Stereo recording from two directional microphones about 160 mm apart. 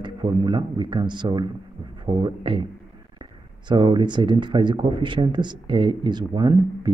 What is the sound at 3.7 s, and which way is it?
Speech, 30° right (ahead or behind).